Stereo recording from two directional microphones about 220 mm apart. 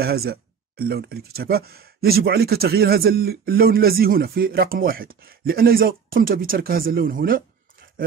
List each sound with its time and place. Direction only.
0.0 s speech: 45° right (ahead or behind)